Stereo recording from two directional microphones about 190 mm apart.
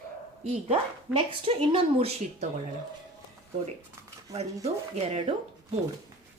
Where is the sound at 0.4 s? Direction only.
30° right (ahead or behind).